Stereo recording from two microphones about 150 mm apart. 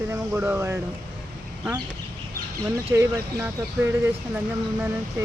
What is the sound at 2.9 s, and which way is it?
Speech, 15° right (ahead or behind).